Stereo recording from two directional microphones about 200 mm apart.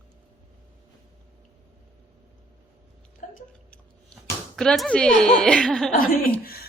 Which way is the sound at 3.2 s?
35° left (ahead or behind).